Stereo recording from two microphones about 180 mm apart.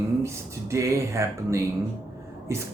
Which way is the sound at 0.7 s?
15° right (ahead or behind).